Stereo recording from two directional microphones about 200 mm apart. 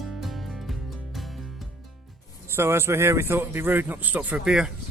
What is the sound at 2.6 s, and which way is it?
A man's voice, 10° right (ahead or behind).